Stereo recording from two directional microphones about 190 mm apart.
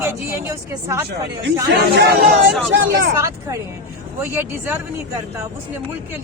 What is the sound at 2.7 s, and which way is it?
Speech, 65° right (ahead or behind).